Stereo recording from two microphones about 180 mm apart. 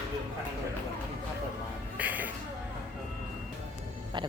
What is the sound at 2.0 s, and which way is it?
Music, 10° right (ahead or behind).